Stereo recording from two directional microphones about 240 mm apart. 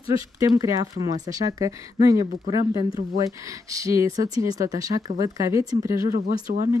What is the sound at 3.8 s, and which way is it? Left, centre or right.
Speech, centre.